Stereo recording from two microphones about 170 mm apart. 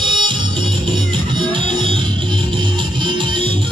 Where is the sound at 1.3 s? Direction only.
30° right (ahead or behind).